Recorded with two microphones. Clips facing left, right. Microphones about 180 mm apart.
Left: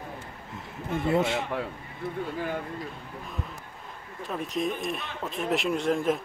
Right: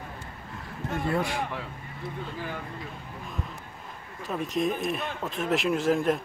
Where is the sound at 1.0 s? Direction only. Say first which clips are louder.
Left 4 dB; 25° left (ahead or behind).